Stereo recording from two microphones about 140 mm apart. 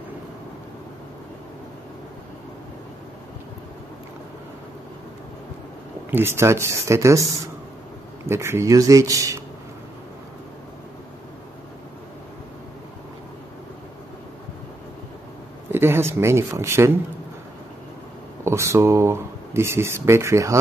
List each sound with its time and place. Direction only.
6.0 s speech: 15° right (ahead or behind)
15.7 s speech: 15° right (ahead or behind)
18.4 s speech: 20° right (ahead or behind)